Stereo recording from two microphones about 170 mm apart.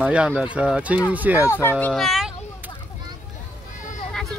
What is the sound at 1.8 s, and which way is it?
Speech, centre (ahead or behind).